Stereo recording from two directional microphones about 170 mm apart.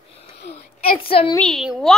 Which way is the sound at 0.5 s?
35° left (ahead or behind).